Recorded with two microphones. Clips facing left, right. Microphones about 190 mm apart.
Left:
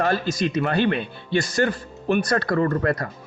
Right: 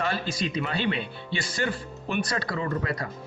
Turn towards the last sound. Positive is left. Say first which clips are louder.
# left 8 dB
turn(degrees=50)  # may be behind; listen again after turning